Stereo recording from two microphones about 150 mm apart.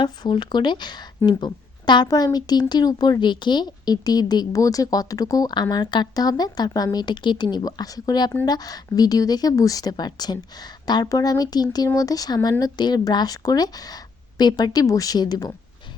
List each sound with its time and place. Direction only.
0.0 s speech: 30° left (ahead or behind)